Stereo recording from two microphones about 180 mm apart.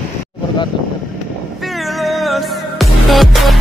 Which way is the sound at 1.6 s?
Centre (ahead or behind).